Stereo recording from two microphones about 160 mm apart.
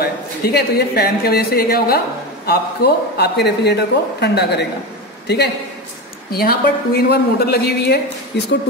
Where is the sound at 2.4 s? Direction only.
90° left.